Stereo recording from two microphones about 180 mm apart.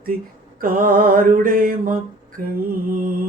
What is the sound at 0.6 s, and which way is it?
Mantra, 50° right (ahead or behind).